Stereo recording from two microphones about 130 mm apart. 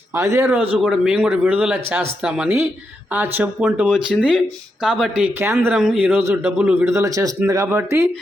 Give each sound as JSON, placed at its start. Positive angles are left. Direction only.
{"t": 0.1, "sound": "speech", "side_deg": -20}
{"t": 0.8, "sound": "speech", "side_deg": -5}
{"t": 5.4, "sound": "speech", "side_deg": -20}
{"t": 5.7, "sound": "speech", "side_deg": -5}